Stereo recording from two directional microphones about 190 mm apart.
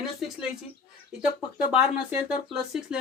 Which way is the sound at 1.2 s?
5° right (ahead or behind).